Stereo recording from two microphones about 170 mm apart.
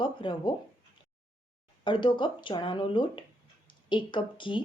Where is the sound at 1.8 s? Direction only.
30° left (ahead or behind).